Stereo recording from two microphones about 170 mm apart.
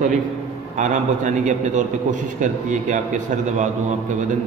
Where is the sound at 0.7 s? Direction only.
45° right (ahead or behind).